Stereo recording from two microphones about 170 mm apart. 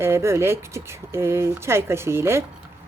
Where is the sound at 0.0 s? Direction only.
15° right (ahead or behind).